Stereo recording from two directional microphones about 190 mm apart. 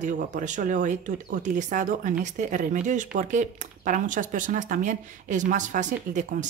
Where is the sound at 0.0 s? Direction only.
40° right (ahead or behind).